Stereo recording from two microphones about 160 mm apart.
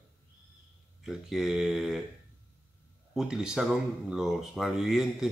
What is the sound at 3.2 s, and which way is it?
Speech, 5° right (ahead or behind).